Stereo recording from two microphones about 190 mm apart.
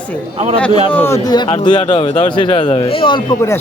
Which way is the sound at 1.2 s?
25° left (ahead or behind).